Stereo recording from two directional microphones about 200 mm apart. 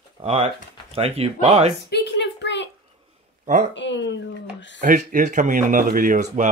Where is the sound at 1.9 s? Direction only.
60° left (ahead or behind).